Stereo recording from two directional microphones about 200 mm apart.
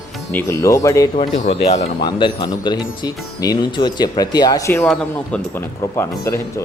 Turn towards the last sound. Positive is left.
turn(degrees=15)  # may be behind; listen again after turning